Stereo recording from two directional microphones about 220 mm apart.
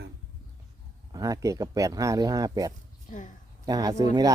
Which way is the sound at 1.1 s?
15° right (ahead or behind).